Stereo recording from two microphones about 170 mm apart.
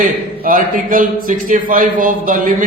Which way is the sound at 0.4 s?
55° right (ahead or behind).